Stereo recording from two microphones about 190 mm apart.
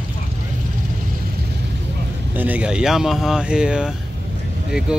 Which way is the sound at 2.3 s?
10° right (ahead or behind).